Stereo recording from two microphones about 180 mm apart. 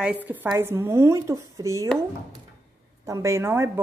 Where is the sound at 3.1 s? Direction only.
15° right (ahead or behind).